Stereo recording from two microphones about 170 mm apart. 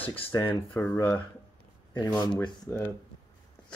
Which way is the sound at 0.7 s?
15° left (ahead or behind).